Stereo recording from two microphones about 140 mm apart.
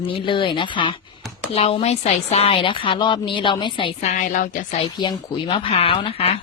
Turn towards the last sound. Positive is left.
turn(degrees=40)  # may be behind; listen again after turning